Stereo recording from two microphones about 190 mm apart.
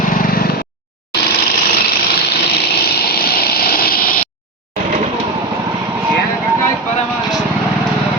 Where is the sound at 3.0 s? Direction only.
55° left (ahead or behind).